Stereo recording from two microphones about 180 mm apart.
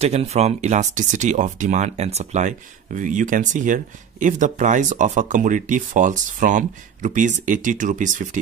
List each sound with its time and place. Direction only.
0.0 s speech: 35° right (ahead or behind)